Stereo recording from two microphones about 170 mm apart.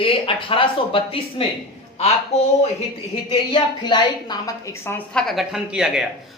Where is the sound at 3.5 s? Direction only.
25° left (ahead or behind); by 6.0 s 5° right (ahead or behind).